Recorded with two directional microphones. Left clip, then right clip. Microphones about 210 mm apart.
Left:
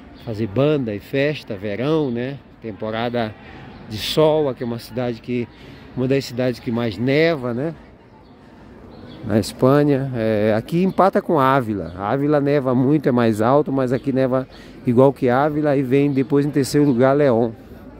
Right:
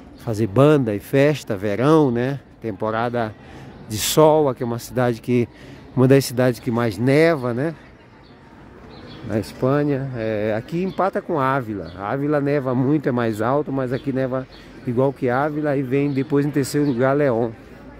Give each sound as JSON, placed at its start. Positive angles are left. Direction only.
{"t": 0.3, "sound": "speech", "side_deg": -20}
{"t": 2.9, "sound": "speech", "side_deg": -10}
{"t": 3.9, "sound": "speech", "side_deg": -20}
{"t": 9.3, "sound": "speech", "side_deg": 15}